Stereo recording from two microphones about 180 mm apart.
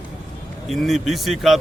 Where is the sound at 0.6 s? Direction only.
Centre (ahead or behind).